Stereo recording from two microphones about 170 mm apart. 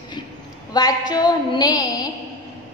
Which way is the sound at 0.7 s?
25° left (ahead or behind).